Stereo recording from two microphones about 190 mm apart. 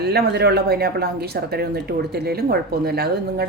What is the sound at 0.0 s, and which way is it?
Speech, 60° right (ahead or behind).